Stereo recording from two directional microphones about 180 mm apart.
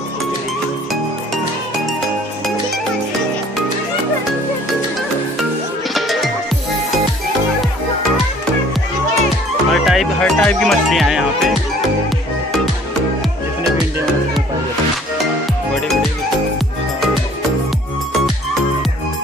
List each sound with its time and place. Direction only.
5.9 s music: centre (ahead or behind)
9.7 s music: centre (ahead or behind)
15.7 s music: centre (ahead or behind)